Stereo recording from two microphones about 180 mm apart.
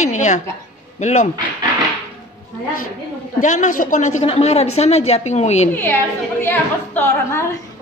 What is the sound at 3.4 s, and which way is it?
A woman's voice, 45° left (ahead or behind).